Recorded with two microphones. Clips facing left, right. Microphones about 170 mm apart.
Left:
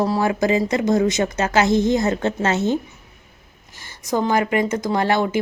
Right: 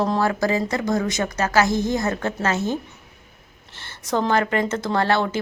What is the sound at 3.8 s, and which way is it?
Speech, 10° left (ahead or behind).